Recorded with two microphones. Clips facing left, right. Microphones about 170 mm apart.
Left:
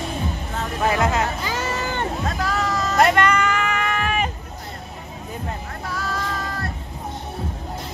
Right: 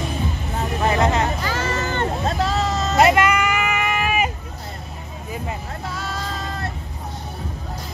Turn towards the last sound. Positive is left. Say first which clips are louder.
# left 1 dB
turn(degrees=-25)  # may be behind; listen again after turning